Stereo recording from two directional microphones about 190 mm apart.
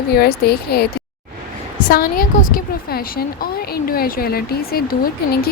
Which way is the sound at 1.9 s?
50° left (ahead or behind).